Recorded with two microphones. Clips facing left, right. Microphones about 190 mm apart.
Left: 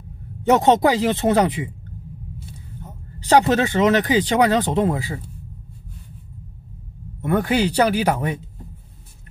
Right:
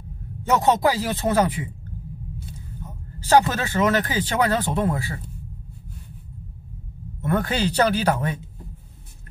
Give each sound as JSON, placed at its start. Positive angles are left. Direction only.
{"t": 0.4, "sound": "speech", "side_deg": 20}
{"t": 3.5, "sound": "speech", "side_deg": 20}
{"t": 7.2, "sound": "speech", "side_deg": 15}